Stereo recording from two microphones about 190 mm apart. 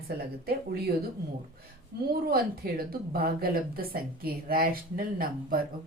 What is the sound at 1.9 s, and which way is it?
A woman's voice, 55° right (ahead or behind).